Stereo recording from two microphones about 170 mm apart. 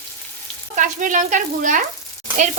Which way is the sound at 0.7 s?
50° right (ahead or behind).